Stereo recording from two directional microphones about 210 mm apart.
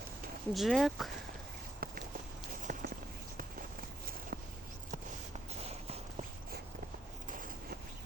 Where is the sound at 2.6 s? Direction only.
40° right (ahead or behind).